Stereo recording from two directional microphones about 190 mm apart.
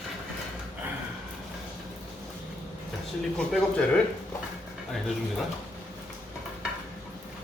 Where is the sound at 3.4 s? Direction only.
5° left (ahead or behind).